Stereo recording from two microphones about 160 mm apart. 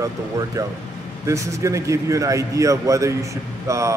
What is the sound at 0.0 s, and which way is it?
Speech, 20° right (ahead or behind).